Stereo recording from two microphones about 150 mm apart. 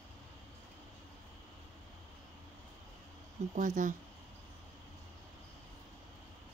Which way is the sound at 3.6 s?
60° right (ahead or behind).